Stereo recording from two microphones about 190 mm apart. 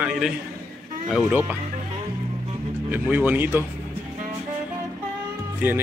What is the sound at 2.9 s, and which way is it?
Speech, 10° right (ahead or behind).